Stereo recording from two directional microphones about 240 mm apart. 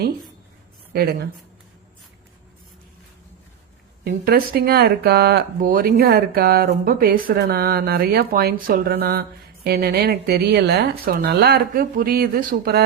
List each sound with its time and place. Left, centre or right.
0.9 s speech: right
4.0 s speech: right